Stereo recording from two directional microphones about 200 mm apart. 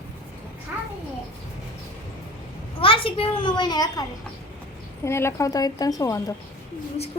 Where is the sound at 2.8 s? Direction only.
25° left (ahead or behind).